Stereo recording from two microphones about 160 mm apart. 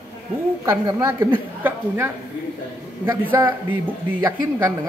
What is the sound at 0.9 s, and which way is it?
Speech, 15° right (ahead or behind).